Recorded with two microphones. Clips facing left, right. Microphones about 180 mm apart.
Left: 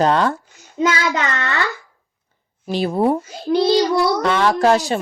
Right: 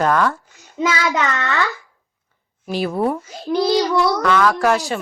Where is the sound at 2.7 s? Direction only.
25° left (ahead or behind).